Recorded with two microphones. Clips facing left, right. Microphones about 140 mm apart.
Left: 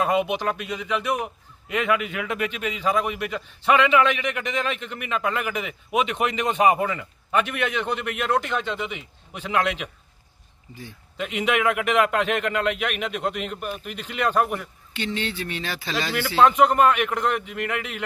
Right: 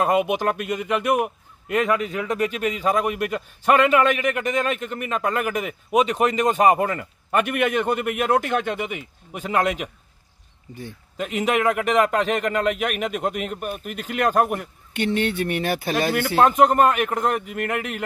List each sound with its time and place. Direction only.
0.3 s a man's voice: 50° right (ahead or behind)